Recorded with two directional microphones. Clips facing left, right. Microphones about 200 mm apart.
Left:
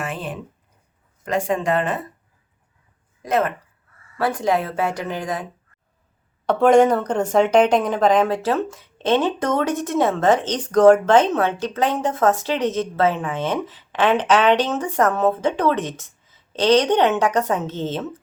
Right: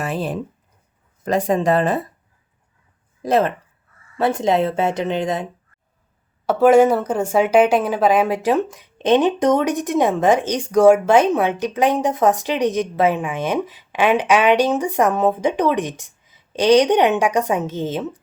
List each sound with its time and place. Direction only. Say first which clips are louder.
0.0 s a sound: right 5 dB; 35° right (ahead or behind)
1.2 s speech: right 3 dB; 40° right (ahead or behind)
3.2 s speech: right 3 dB; 30° right (ahead or behind)
6.4 s a woman's voice: right 2 dB; 5° right (ahead or behind)